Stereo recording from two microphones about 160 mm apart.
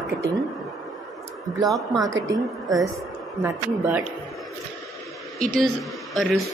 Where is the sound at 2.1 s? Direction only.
20° right (ahead or behind).